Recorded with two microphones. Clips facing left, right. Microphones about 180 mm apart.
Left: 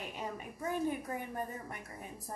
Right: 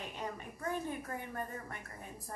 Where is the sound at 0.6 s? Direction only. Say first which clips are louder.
Left 4 dB; 15° left (ahead or behind).